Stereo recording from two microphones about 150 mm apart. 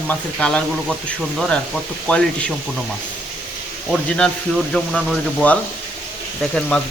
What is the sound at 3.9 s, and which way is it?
Speech, 5° left (ahead or behind).